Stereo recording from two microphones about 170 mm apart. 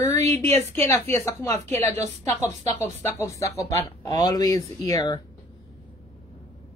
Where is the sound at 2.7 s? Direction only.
15° left (ahead or behind).